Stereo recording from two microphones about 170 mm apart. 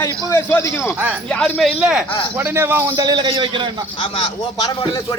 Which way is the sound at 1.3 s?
5° left (ahead or behind).